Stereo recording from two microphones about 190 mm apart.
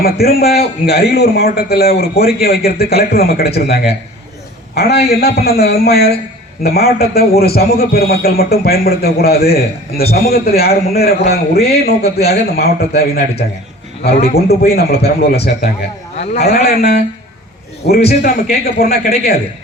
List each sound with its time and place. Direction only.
0.0 s a man's voice: 55° left (ahead or behind)
16.1 s a man's voice: 35° left (ahead or behind)
16.6 s a man's voice: 55° left (ahead or behind)
18.0 s a man's voice: 40° left (ahead or behind)
18.6 s a man's voice: 55° left (ahead or behind)